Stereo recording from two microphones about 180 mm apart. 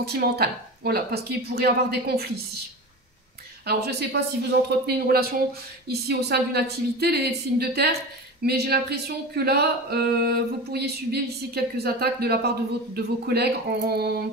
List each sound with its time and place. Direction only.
0.0 s speech: 65° right (ahead or behind)
3.6 s speech: 65° right (ahead or behind)